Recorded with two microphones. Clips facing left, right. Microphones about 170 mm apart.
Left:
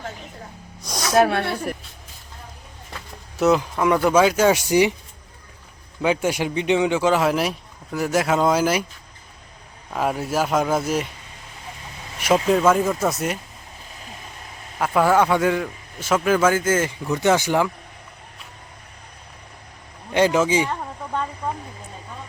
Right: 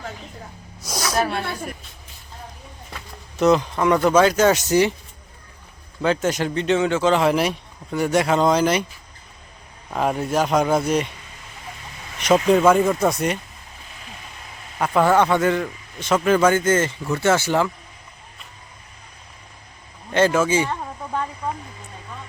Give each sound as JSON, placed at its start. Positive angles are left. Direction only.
{"t": 0.8, "sound": "a sound", "side_deg": 0}
{"t": 1.2, "sound": "speech", "side_deg": 65}
{"t": 3.3, "sound": "a man's voice", "side_deg": 10}
{"t": 6.0, "sound": "a man's voice", "side_deg": 10}
{"t": 9.9, "sound": "speech", "side_deg": 0}
{"t": 12.2, "sound": "speech", "side_deg": 5}
{"t": 14.8, "sound": "a man's voice", "side_deg": 5}
{"t": 20.1, "sound": "a man's voice", "side_deg": 15}